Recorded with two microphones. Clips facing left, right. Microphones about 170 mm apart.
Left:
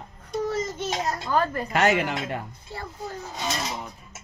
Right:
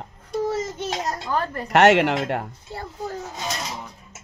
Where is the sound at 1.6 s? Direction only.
75° right (ahead or behind).